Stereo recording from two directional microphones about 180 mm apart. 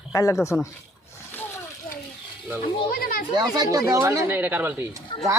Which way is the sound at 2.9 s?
55° left (ahead or behind).